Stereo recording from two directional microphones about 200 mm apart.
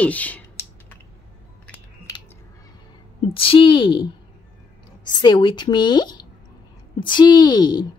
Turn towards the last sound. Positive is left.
turn(degrees=20)  # may be behind; listen again after turning